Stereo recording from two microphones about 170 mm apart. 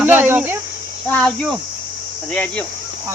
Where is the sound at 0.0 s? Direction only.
10° right (ahead or behind).